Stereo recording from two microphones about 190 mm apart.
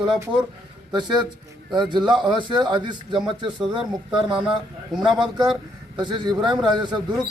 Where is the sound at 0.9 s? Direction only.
25° right (ahead or behind).